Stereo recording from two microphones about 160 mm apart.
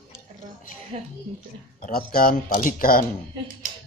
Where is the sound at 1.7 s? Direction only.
65° left (ahead or behind).